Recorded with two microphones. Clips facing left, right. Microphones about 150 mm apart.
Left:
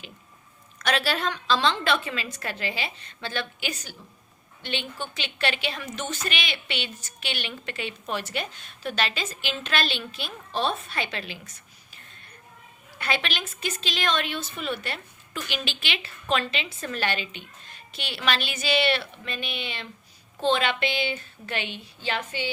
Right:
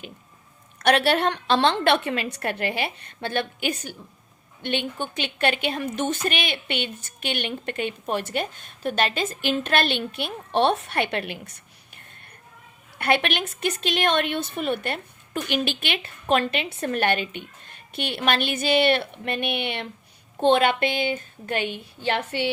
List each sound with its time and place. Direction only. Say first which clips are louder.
0.8 s a woman's voice: right 6 dB; 60° right (ahead or behind)
13.0 s a woman's voice: right 6 dB; 60° right (ahead or behind)